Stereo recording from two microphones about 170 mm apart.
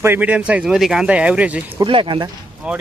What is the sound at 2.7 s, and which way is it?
Speech, 5° right (ahead or behind).